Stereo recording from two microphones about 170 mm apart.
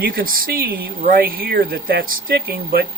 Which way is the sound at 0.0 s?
60° right (ahead or behind).